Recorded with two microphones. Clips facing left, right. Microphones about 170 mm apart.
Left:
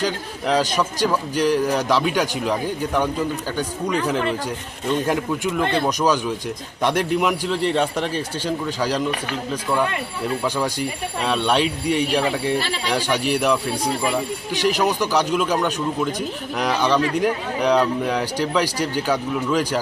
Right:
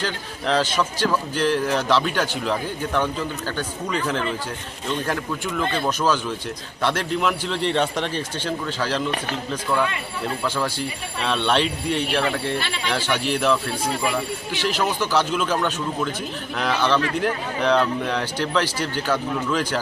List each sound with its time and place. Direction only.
0.0 s speech: 10° left (ahead or behind)
10.4 s speech: 15° left (ahead or behind)
12.5 s speech: 35° left (ahead or behind)
12.9 s speech: 15° left (ahead or behind)
14.9 s speech: 15° left (ahead or behind)